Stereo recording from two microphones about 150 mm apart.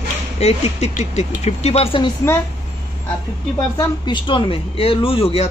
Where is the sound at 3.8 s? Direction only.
30° left (ahead or behind).